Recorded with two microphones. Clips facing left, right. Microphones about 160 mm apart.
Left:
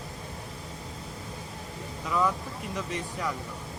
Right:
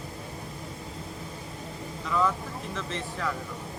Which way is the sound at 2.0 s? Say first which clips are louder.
Even; 10° left (ahead or behind).